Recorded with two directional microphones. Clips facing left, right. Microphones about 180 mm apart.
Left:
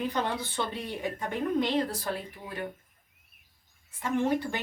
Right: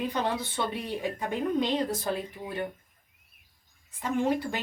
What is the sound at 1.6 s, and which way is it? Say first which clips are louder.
Speech: right 1 dB; 20° right (ahead or behind).